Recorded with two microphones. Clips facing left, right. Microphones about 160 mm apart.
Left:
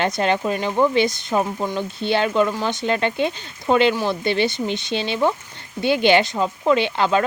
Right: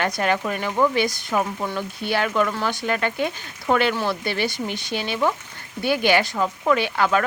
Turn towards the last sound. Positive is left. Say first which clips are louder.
# left 2 dB
turn(degrees=25)  # may be behind; listen again after turning